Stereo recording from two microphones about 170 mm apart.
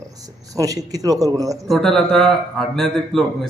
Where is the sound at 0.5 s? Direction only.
20° right (ahead or behind).